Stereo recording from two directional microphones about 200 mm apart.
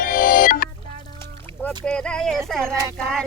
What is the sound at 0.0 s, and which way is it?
Music, 45° left (ahead or behind).